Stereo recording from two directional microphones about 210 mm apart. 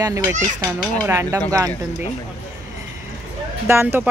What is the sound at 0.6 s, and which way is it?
Children playing, 45° left (ahead or behind).